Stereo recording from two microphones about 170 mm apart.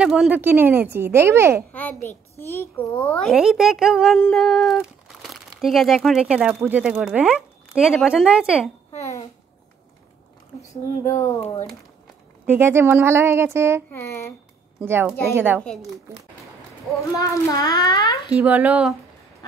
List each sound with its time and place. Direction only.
0.0 s speech: 5° right (ahead or behind)
1.7 s a child's voice: 10° left (ahead or behind)
10.7 s speech: 15° left (ahead or behind)
12.4 s speech: 15° right (ahead or behind)
13.8 s speech: 15° left (ahead or behind)
14.9 s speech: 15° right (ahead or behind)
17.2 s a child's voice: 20° left (ahead or behind)
18.3 s speech: 10° right (ahead or behind)